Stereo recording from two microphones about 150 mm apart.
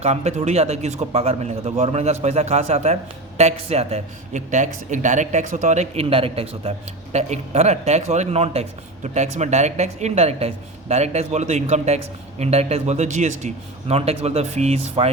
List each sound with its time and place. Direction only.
0.0 s a man's voice: 45° right (ahead or behind)